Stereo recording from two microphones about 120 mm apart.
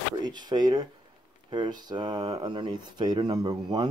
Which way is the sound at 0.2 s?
35° right (ahead or behind).